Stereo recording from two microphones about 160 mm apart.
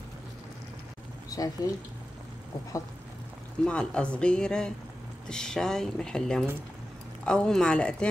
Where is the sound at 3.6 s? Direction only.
5° left (ahead or behind).